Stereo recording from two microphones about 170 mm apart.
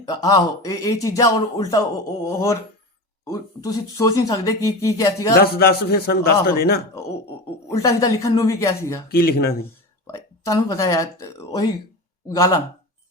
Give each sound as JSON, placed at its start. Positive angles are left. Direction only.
{"t": 0.1, "sound": "speech", "side_deg": 20}
{"t": 5.4, "sound": "a man's voice", "side_deg": 65}
{"t": 7.7, "sound": "speech", "side_deg": 20}
{"t": 9.0, "sound": "a man's voice", "side_deg": 65}
{"t": 10.1, "sound": "speech", "side_deg": 20}